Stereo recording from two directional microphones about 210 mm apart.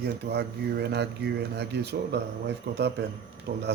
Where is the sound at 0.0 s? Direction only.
50° right (ahead or behind).